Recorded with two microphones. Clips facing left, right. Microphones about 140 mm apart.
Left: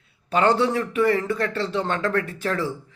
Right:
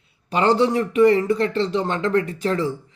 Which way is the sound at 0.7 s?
20° right (ahead or behind).